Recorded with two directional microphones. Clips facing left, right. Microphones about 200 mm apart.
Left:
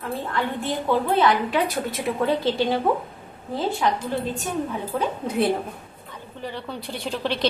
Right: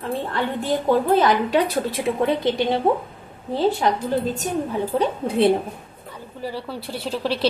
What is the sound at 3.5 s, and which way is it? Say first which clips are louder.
Speech: right 4 dB; 35° right (ahead or behind).